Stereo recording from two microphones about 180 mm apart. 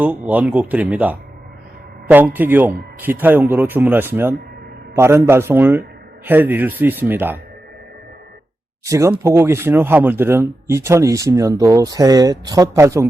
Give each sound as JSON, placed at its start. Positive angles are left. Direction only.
{"t": 0.0, "sound": "speech", "side_deg": -10}
{"t": 8.8, "sound": "speech", "side_deg": -15}